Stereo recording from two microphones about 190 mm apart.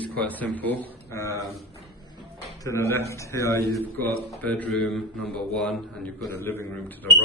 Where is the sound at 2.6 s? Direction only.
15° left (ahead or behind).